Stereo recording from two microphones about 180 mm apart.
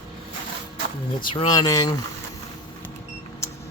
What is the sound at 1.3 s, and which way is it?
Speech, 25° left (ahead or behind).